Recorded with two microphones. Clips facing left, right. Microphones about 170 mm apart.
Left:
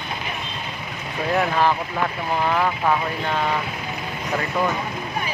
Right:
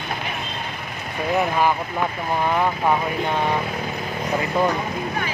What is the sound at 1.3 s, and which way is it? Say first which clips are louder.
Speech: even; 10° right (ahead or behind).